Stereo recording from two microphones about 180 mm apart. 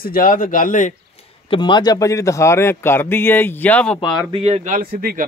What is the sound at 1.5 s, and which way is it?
A man's voice, 25° left (ahead or behind).